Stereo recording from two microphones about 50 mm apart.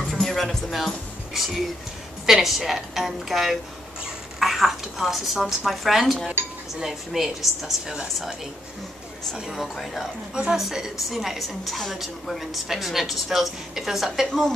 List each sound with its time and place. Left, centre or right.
0.0 s music: centre
2.2 s a woman's voice: centre
6.4 s speech: right
6.8 s a woman's voice: centre
10.3 s a woman's voice: centre
14.2 s speech: centre